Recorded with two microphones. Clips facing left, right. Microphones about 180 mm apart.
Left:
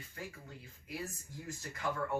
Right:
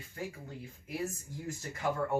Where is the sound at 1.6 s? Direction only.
25° right (ahead or behind).